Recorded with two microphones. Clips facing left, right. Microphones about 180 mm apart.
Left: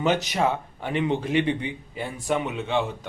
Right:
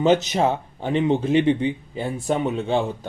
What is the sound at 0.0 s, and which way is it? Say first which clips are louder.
Speech: right 5 dB; 25° right (ahead or behind).